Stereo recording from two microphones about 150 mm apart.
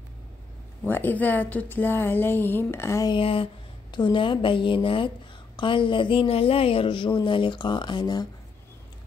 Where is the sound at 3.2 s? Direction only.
35° left (ahead or behind).